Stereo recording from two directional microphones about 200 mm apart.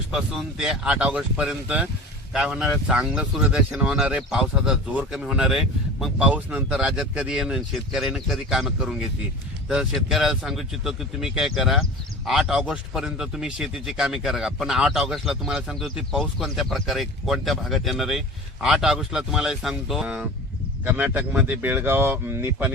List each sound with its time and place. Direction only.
0.1 s speech: centre (ahead or behind)